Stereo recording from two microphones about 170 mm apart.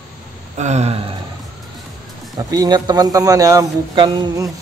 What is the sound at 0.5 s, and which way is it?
Speech, 40° right (ahead or behind).